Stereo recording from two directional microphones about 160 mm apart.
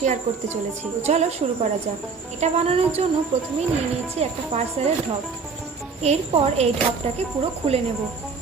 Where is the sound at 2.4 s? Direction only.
40° right (ahead or behind).